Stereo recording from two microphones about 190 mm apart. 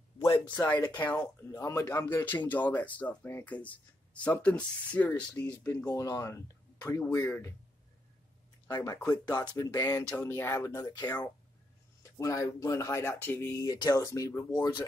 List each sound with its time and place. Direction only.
0.2 s speech: 20° left (ahead or behind)
0.7 s speech: 10° left (ahead or behind)
8.7 s speech: 15° left (ahead or behind)